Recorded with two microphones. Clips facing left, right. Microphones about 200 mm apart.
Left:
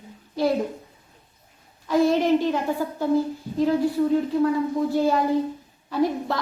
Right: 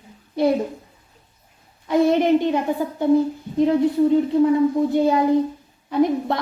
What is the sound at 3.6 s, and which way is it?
Speech, 20° right (ahead or behind).